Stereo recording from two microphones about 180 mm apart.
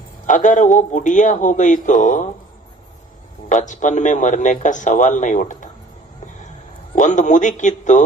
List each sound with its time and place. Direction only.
0.3 s a man's voice: 45° left (ahead or behind)
3.5 s a man's voice: 45° left (ahead or behind)
6.9 s a man's voice: 45° left (ahead or behind)